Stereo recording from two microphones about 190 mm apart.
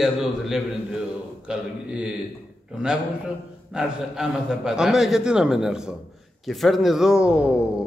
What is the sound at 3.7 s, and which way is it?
A man's voice, 5° right (ahead or behind).